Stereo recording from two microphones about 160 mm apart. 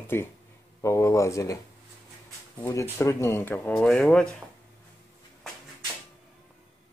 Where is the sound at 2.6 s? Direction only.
20° left (ahead or behind).